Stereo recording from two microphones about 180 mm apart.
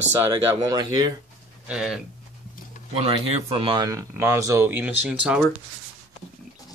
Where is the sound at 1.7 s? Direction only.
5° right (ahead or behind).